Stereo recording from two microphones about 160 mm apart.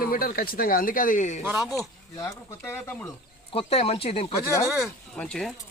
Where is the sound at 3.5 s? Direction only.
35° left (ahead or behind).